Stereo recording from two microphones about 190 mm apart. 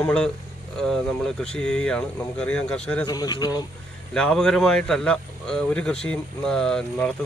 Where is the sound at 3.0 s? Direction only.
20° left (ahead or behind).